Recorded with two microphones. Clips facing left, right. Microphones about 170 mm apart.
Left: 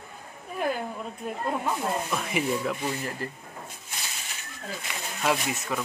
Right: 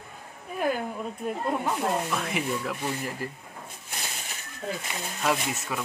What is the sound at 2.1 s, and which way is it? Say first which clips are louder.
Rub: left 2 dB; centre (ahead or behind).